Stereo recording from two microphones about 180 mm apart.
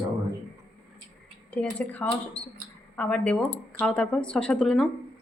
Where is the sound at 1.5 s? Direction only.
10° left (ahead or behind).